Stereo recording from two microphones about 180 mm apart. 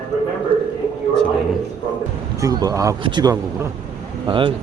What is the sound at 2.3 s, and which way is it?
Speech, 20° right (ahead or behind).